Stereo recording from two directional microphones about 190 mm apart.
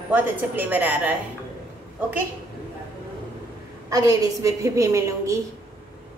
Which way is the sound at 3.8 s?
20° right (ahead or behind).